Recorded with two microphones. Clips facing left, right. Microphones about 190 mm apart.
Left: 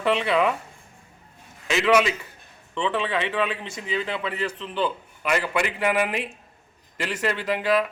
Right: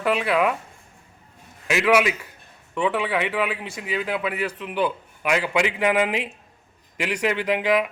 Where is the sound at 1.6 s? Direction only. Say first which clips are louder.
Right 1 dB; 5° right (ahead or behind).